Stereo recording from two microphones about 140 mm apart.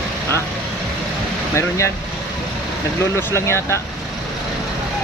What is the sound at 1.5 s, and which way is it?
Speech, 20° left (ahead or behind).